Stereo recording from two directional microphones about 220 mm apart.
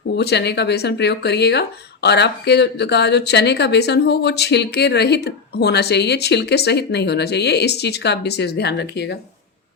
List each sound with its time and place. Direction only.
0.2 s speech: 50° left (ahead or behind)